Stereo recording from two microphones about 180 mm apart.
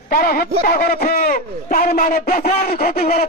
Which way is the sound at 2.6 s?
55° left (ahead or behind).